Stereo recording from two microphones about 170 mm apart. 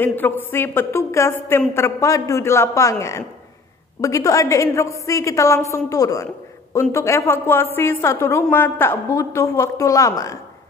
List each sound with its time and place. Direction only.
0.0 s a woman's voice: 10° left (ahead or behind)